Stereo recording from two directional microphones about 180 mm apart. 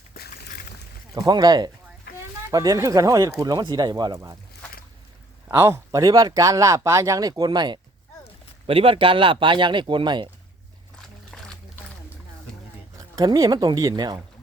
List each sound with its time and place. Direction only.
0.1 s boat: 55° left (ahead or behind)
1.1 s speech: 20° right (ahead or behind)
5.5 s speech: 15° right (ahead or behind)
10.9 s a sound: 5° left (ahead or behind)
13.0 s speech: 20° right (ahead or behind)